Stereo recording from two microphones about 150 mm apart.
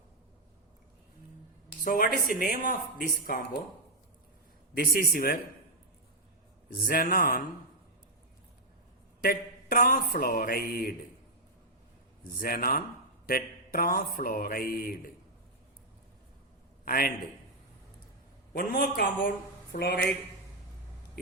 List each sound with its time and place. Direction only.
1.8 s speech: 70° left (ahead or behind)
4.7 s a man's voice: 75° left (ahead or behind)
5.1 s a man's voice: 90° left
6.7 s a man's voice: 75° left (ahead or behind)
9.2 s speech: 75° left (ahead or behind)
12.4 s speech: 75° left (ahead or behind)
16.8 s a man's voice: 75° left (ahead or behind)
18.5 s a man's voice: 85° left